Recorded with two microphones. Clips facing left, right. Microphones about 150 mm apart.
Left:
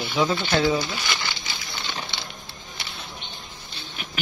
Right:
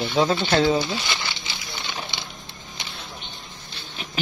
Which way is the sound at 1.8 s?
10° right (ahead or behind).